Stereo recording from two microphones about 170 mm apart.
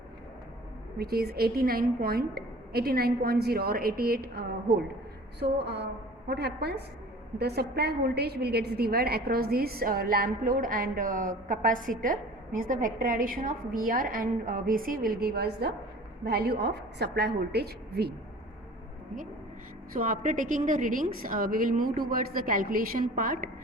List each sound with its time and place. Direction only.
0.9 s a woman's voice: 65° right (ahead or behind)
5.4 s a woman's voice: 80° right
19.9 s a woman's voice: 55° right (ahead or behind)